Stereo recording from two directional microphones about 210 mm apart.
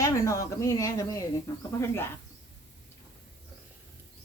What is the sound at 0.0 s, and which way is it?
Speech, 15° left (ahead or behind).